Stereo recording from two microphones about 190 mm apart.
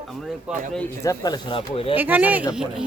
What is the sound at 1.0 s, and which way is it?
Speech, 20° left (ahead or behind).